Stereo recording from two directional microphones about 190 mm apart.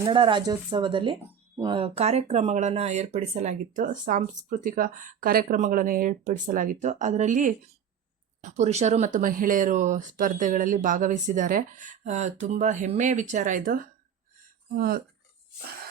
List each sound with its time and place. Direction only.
0.0 s speech: 25° right (ahead or behind); by 15.0 s 50° right (ahead or behind)